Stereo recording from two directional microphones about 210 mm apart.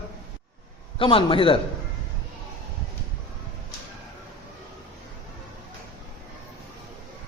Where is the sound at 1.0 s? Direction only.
25° left (ahead or behind).